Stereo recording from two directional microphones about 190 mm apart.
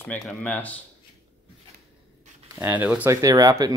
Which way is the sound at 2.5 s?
10° right (ahead or behind).